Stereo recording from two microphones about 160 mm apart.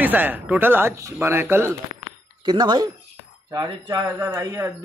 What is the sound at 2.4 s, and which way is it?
Speech, 25° right (ahead or behind).